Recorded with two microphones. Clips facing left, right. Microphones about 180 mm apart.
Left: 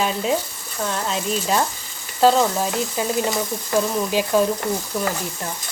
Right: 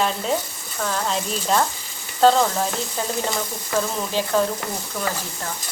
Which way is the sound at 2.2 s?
5° left (ahead or behind).